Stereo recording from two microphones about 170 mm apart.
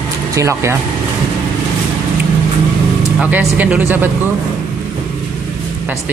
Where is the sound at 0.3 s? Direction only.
15° right (ahead or behind).